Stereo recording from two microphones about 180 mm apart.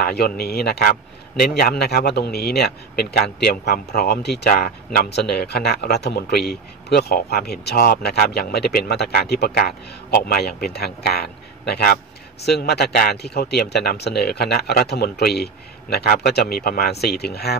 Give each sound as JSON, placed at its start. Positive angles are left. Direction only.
{"t": 0.0, "sound": "speech", "side_deg": 60}